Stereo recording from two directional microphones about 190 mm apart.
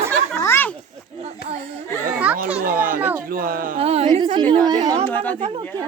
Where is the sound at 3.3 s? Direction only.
50° right (ahead or behind).